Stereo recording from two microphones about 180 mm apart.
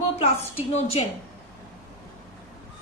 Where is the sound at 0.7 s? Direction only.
35° left (ahead or behind).